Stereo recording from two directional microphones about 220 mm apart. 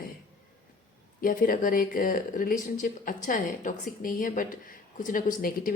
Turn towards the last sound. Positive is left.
turn(degrees=40)  # may be behind; listen again after turning